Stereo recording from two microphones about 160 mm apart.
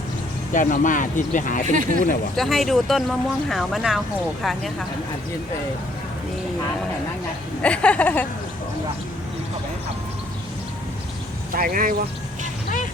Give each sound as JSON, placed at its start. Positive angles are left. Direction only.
{"t": 0.5, "sound": "speech", "side_deg": 55}
{"t": 1.6, "sound": "speech", "side_deg": -50}
{"t": 2.3, "sound": "speech", "side_deg": 0}
{"t": 7.6, "sound": "speech", "side_deg": 5}
{"t": 11.5, "sound": "speech", "side_deg": -60}